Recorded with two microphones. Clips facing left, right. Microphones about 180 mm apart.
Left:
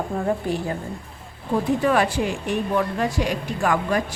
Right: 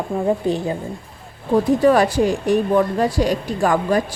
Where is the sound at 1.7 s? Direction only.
40° right (ahead or behind).